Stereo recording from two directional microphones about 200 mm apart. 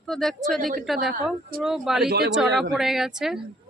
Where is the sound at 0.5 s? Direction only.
45° right (ahead or behind).